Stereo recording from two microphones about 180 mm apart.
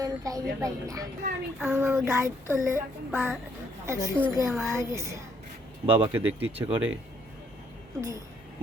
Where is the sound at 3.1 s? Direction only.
5° right (ahead or behind).